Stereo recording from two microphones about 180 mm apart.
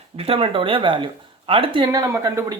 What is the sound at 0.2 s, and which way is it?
Speech, 30° right (ahead or behind).